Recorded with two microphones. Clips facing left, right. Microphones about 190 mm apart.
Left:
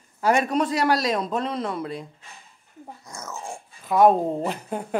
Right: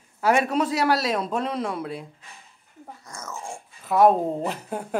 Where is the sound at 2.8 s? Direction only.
10° left (ahead or behind).